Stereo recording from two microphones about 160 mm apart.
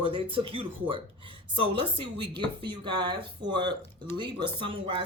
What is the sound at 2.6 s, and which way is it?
A woman's voice, 30° right (ahead or behind).